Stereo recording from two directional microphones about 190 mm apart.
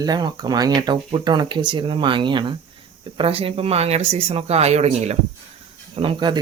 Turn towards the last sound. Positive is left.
turn(degrees=-25)  # may be behind; listen again after turning